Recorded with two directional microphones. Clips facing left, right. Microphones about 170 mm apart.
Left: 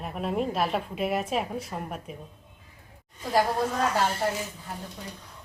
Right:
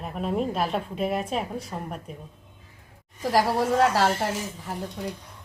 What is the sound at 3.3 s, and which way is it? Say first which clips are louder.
Speech: right 3 dB; 90° right.